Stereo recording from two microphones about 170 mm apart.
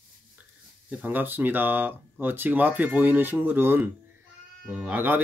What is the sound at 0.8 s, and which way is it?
Speech, 10° right (ahead or behind).